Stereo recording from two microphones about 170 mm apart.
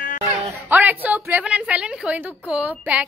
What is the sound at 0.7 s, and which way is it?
A woman's voice, 10° right (ahead or behind).